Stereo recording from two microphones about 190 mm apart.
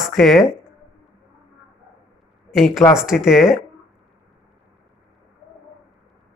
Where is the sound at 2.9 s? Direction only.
Centre (ahead or behind).